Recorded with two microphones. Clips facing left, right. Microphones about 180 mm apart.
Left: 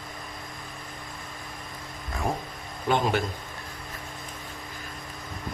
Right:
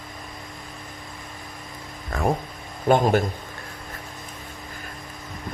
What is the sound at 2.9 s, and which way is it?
Speech, 45° right (ahead or behind).